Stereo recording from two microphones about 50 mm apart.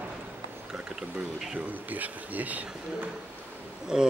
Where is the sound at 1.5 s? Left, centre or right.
Right.